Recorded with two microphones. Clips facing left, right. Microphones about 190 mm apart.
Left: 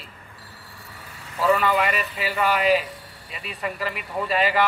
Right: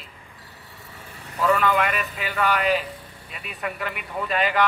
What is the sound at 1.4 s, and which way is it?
A man's voice, 5° left (ahead or behind).